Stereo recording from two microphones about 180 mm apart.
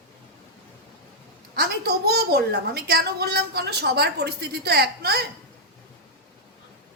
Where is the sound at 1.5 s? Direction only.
60° right (ahead or behind).